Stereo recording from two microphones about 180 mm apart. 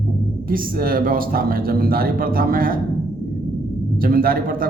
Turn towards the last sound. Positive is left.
turn(degrees=-55)  # may be behind; listen again after turning